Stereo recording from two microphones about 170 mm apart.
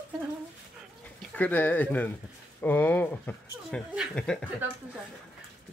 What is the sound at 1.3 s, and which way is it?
Speech, 10° left (ahead or behind).